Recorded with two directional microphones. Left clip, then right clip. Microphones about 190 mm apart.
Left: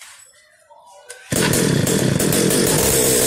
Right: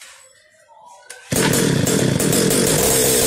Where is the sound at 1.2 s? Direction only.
5° left (ahead or behind).